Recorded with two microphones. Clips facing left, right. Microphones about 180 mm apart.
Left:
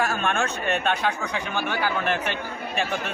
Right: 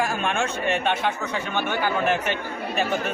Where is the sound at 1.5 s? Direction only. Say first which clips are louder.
Right 2 dB; 5° left (ahead or behind).